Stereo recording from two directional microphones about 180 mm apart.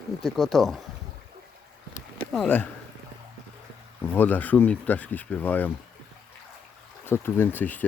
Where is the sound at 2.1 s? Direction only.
5° left (ahead or behind).